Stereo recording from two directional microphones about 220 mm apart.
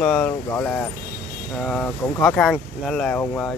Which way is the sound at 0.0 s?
5° left (ahead or behind).